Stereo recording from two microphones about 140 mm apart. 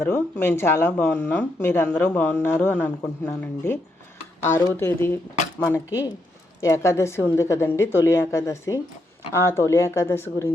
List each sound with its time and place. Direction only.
0.0 s a woman's voice: 15° left (ahead or behind)